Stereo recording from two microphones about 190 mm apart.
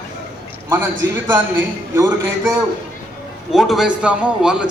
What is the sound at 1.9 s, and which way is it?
Speech, 15° right (ahead or behind).